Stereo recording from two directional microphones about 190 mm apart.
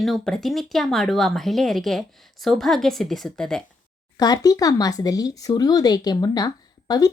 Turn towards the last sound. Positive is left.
turn(degrees=20)  # may be behind; listen again after turning